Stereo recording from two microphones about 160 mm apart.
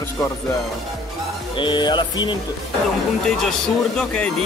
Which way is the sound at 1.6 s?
30° left (ahead or behind).